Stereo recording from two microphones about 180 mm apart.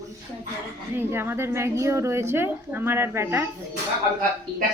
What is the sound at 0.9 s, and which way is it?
A woman's voice, 10° right (ahead or behind).